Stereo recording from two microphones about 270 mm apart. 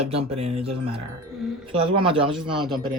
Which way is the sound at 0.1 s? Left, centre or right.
Right.